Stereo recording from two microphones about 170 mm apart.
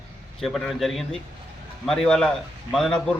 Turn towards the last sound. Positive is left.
turn(degrees=0)  # may be behind; listen again after turning